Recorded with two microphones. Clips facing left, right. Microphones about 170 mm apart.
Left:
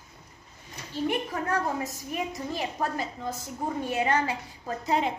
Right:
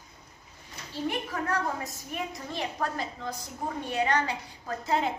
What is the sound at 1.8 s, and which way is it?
Speech, centre (ahead or behind).